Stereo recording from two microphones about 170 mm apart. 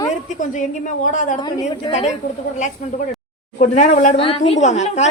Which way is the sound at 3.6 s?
45° left (ahead or behind).